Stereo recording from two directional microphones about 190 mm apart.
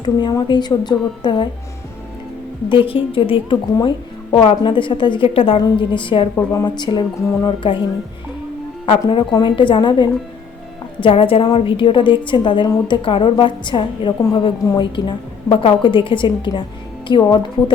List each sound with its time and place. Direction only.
0.0 s a woman's voice: 20° left (ahead or behind)
2.6 s a woman's voice: 25° left (ahead or behind)
8.9 s a woman's voice: 25° left (ahead or behind)